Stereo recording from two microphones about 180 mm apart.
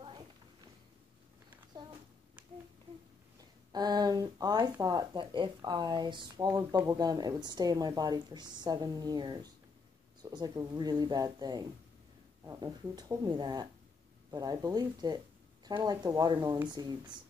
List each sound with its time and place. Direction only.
3.7 s speech: 20° right (ahead or behind)